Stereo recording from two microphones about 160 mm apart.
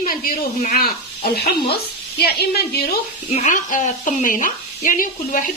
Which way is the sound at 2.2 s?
85° left.